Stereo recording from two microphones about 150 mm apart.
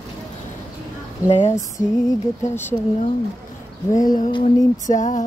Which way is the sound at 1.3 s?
55° left (ahead or behind).